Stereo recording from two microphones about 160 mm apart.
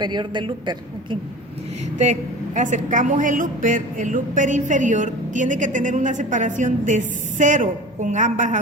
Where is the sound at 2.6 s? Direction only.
50° right (ahead or behind).